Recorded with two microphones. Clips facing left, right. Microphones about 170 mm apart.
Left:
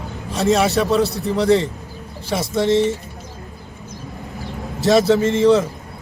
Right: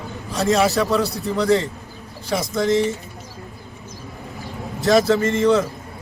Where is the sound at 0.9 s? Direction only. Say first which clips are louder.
Left 3 dB; 25° left (ahead or behind).